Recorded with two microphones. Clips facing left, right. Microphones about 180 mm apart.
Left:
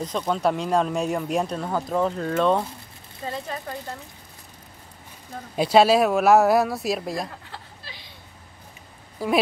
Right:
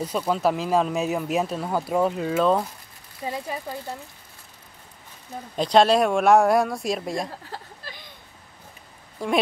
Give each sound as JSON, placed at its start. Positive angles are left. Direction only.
{"t": 0.0, "sound": "speech", "side_deg": -10}
{"t": 3.3, "sound": "speech", "side_deg": -10}
{"t": 5.6, "sound": "speech", "side_deg": 5}
{"t": 7.2, "sound": "a sound", "side_deg": -40}
{"t": 9.2, "sound": "speech", "side_deg": 5}